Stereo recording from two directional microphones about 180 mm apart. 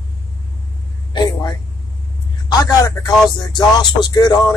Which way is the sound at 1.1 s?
25° left (ahead or behind).